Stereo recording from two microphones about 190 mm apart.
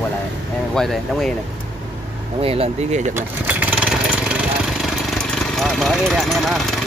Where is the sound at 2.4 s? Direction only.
30° right (ahead or behind).